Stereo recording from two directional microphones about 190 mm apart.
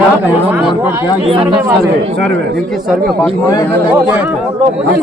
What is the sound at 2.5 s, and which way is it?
Speech, centre (ahead or behind).